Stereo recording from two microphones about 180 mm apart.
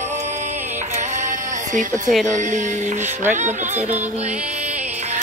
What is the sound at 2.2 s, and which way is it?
Music, 45° right (ahead or behind).